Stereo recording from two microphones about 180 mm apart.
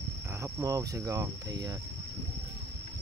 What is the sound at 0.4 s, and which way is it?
Cricket, 20° right (ahead or behind).